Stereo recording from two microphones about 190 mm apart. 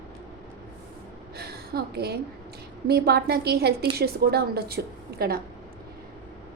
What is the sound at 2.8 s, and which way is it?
A woman's voice, 55° right (ahead or behind).